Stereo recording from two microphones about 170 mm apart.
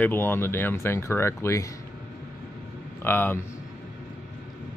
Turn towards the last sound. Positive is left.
turn(degrees=15)  # may be behind; listen again after turning